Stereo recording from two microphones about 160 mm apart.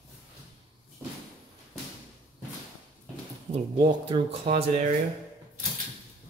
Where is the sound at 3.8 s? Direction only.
35° right (ahead or behind).